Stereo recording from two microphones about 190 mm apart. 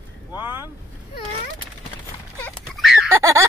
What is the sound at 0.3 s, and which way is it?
Vehicle, 10° right (ahead or behind).